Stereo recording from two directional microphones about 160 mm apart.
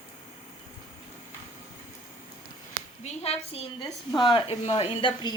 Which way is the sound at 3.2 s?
40° left (ahead or behind).